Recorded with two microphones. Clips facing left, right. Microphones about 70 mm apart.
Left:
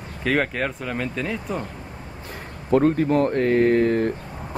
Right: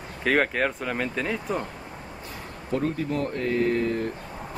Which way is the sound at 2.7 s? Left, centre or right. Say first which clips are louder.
Left 9 dB; left.